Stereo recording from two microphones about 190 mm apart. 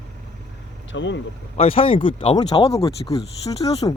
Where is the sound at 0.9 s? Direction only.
75° left (ahead or behind).